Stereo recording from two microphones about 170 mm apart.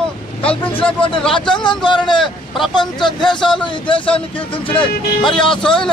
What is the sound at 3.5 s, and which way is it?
Speech, 30° left (ahead or behind).